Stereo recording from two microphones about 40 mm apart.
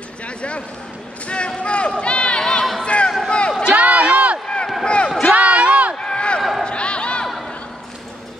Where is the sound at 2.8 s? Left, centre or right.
Left.